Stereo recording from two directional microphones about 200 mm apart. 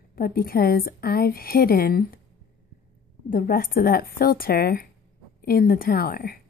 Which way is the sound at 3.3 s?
45° left (ahead or behind).